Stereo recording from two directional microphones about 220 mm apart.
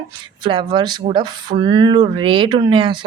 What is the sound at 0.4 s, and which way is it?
Speech, 20° right (ahead or behind).